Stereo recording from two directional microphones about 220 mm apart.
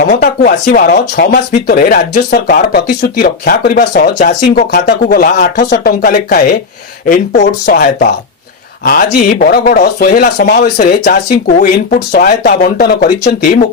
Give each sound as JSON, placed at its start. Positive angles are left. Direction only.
{"t": 0.1, "sound": "speech", "side_deg": 45}
{"t": 7.6, "sound": "speech", "side_deg": 45}